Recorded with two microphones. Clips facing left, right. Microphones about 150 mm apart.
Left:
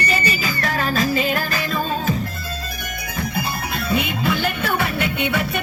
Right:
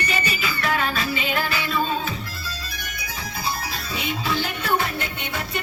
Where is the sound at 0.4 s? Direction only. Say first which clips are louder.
Left 1 dB; 40° left (ahead or behind).